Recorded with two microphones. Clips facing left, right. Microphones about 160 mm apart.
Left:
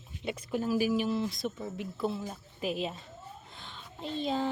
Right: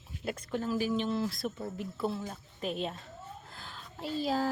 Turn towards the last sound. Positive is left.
turn(degrees=-5)  # may be behind; listen again after turning